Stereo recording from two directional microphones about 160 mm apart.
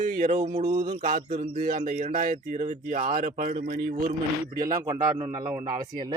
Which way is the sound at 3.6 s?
65° right (ahead or behind).